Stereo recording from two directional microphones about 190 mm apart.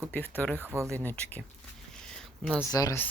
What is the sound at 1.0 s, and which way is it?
Speech, 10° left (ahead or behind).